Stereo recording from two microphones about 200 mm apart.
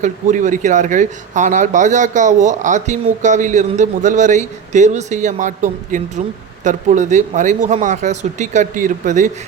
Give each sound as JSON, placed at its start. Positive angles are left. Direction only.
{"t": 0.0, "sound": "speech", "side_deg": -40}